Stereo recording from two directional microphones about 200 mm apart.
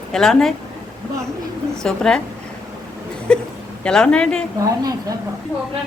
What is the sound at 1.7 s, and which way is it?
Speech, 5° left (ahead or behind).